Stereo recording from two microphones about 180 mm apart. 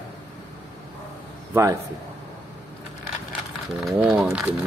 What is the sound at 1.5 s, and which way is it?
Speech, 15° right (ahead or behind).